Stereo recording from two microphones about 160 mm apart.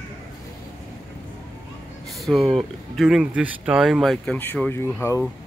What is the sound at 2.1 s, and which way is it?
Speech, centre (ahead or behind).